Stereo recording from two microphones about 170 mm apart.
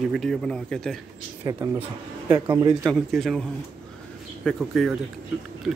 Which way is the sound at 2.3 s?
20° right (ahead or behind).